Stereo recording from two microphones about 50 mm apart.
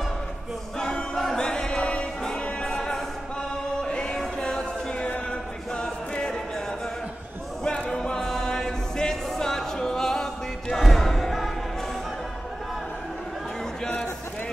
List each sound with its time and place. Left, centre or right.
0.7 s choir: centre
2.2 s music: centre
5.3 s a capella: centre
7.6 s music: centre